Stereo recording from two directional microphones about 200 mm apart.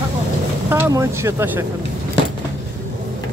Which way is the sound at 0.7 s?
15° right (ahead or behind).